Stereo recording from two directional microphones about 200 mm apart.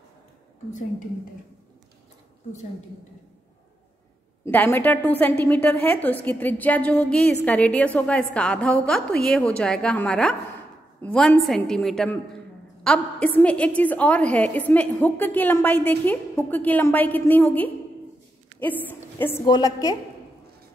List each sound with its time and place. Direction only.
4.5 s a woman's voice: 10° left (ahead or behind)